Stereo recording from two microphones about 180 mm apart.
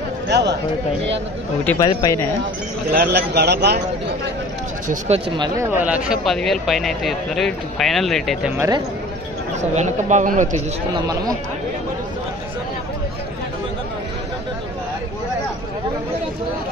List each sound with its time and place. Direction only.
0.3 s speech: 70° right (ahead or behind)
1.8 s speech: 20° left (ahead or behind)
2.9 s a man's voice: 65° right (ahead or behind)
4.8 s speech: 40° right (ahead or behind)
5.4 s speech: 15° right (ahead or behind)
6.2 s speech: centre (ahead or behind)
9.6 s speech: 40° right (ahead or behind)